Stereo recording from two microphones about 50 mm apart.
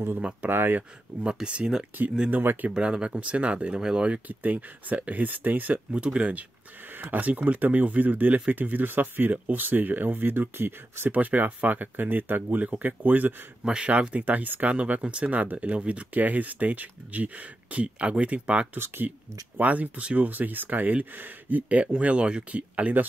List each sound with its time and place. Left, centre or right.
0.5 s speech: right
1.2 s speech: centre
2.3 s speech: right
2.7 s speech: centre
4.3 s speech: right
5.9 s speech: right
7.0 s speech: right
13.7 s speech: right
14.2 s speech: right